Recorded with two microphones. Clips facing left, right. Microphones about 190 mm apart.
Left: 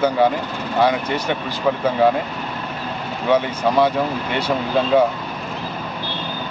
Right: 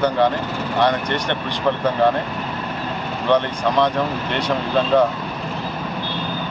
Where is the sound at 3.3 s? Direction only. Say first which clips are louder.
Left 1 dB; 5° left (ahead or behind).